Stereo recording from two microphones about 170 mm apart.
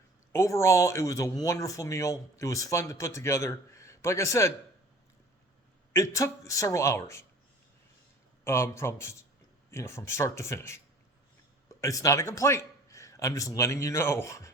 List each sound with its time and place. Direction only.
0.3 s speech: 15° left (ahead or behind)
5.9 s speech: 15° left (ahead or behind)
8.4 s speech: 15° left (ahead or behind)
11.8 s a man's voice: 20° left (ahead or behind)